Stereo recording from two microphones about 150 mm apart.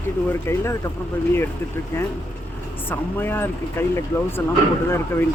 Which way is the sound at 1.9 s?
15° left (ahead or behind).